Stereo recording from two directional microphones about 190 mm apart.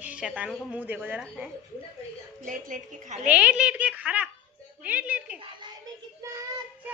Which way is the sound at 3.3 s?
5° right (ahead or behind).